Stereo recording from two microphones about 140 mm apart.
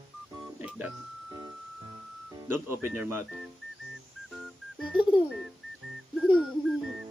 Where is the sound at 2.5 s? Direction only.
15° right (ahead or behind).